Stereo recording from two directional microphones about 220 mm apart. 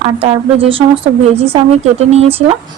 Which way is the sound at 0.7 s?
25° right (ahead or behind).